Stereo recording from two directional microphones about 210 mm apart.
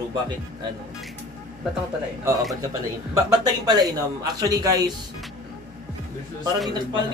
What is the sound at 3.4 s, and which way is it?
Speech, 20° right (ahead or behind).